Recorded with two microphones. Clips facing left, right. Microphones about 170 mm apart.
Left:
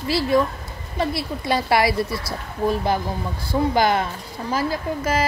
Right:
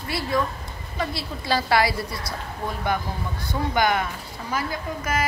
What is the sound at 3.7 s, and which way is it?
A woman's voice, 30° left (ahead or behind).